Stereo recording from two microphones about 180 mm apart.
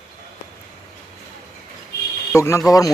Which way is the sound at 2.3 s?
15° left (ahead or behind).